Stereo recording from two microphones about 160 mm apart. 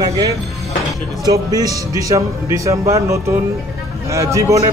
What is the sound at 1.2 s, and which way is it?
Speech, 20° right (ahead or behind).